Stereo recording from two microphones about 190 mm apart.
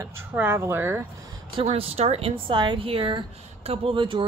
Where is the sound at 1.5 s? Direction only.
30° right (ahead or behind).